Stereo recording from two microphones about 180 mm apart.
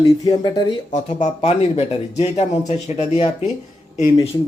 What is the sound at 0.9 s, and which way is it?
Speech, 40° left (ahead or behind).